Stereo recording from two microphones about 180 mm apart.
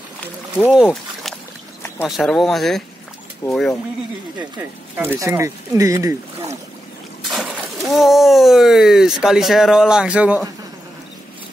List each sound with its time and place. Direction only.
0.7 s speech: 5° right (ahead or behind)
3.4 s speech: 15° left (ahead or behind)
4.6 s speech: 15° right (ahead or behind)
7.2 s speech: centre (ahead or behind)